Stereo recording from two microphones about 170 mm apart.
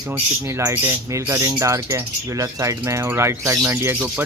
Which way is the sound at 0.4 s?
15° right (ahead or behind).